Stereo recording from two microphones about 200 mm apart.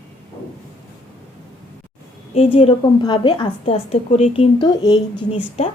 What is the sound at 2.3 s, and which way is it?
A woman's voice, 25° left (ahead or behind).